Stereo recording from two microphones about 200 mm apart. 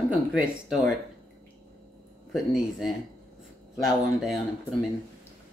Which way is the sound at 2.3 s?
Centre (ahead or behind).